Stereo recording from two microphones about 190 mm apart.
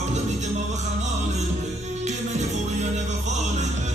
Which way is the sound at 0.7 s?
35° right (ahead or behind).